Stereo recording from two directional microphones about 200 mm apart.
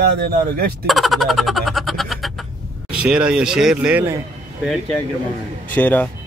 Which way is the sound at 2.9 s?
5° right (ahead or behind).